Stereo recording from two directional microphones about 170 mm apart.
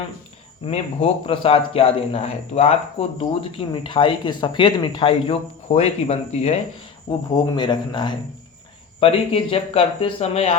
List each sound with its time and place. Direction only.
0.6 s a man's voice: 35° left (ahead or behind)
7.3 s a man's voice: 25° left (ahead or behind)